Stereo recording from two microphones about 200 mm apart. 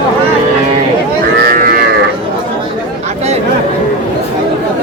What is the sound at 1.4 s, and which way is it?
Livestock, 45° right (ahead or behind).